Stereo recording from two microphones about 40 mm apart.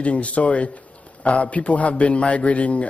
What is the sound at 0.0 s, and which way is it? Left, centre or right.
Speech, left.